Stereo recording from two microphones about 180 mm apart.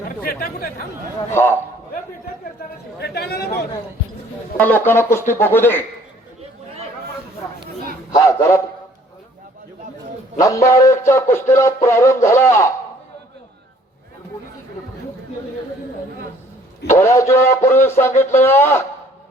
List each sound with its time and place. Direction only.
1.3 s music: 15° left (ahead or behind)
3.0 s a man's voice: 65° left (ahead or behind)
4.6 s music: 10° left (ahead or behind)
8.1 s music: 15° left (ahead or behind)
10.4 s music: 15° left (ahead or behind)
16.9 s music: 15° left (ahead or behind)